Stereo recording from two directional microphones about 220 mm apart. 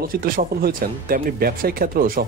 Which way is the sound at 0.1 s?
40° right (ahead or behind).